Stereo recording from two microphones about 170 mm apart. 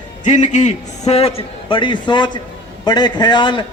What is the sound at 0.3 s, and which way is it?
A man's voice, 45° left (ahead or behind).